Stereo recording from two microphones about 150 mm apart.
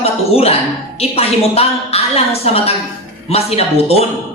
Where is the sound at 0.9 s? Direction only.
40° left (ahead or behind).